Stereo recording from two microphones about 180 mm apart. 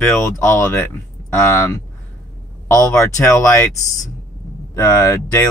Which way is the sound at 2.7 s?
15° left (ahead or behind).